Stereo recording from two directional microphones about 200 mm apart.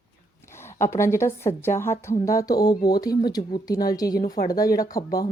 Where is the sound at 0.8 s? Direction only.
15° left (ahead or behind).